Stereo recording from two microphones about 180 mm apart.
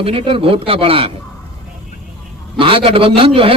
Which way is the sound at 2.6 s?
30° right (ahead or behind).